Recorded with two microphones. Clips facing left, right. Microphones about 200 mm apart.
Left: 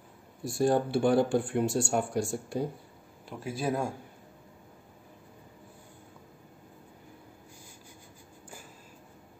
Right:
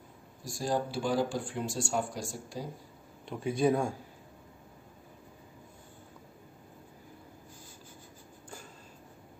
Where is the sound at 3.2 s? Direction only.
Centre (ahead or behind).